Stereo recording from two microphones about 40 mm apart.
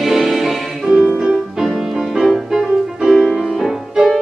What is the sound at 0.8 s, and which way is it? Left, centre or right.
Music, centre.